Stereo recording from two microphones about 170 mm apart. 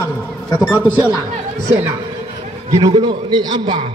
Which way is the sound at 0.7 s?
10° right (ahead or behind).